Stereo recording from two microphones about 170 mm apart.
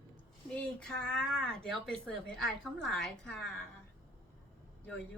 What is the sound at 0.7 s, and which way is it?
Speech, 5° left (ahead or behind).